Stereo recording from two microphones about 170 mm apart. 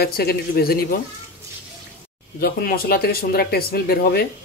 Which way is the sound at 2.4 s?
60° left (ahead or behind).